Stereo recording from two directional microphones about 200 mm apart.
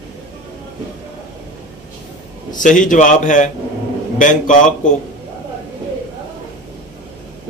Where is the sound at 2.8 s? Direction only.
40° left (ahead or behind).